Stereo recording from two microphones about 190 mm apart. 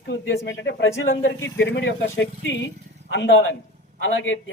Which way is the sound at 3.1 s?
70° left (ahead or behind).